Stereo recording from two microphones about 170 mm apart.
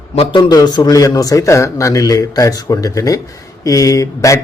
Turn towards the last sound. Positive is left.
turn(degrees=20)  # may be behind; listen again after turning